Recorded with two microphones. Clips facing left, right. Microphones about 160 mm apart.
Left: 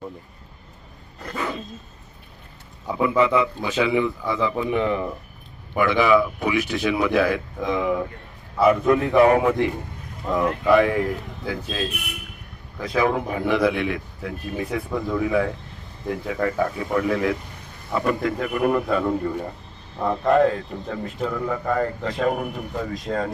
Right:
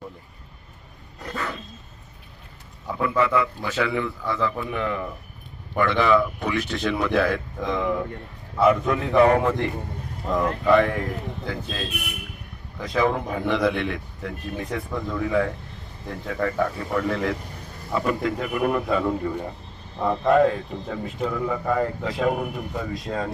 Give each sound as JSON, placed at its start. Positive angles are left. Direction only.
{"t": 2.8, "sound": "a man's voice", "side_deg": 15}
{"t": 5.7, "sound": "a man's voice", "side_deg": 10}